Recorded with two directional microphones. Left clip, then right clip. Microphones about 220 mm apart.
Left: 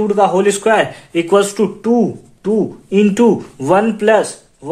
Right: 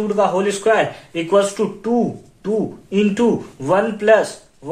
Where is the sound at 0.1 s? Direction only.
45° left (ahead or behind).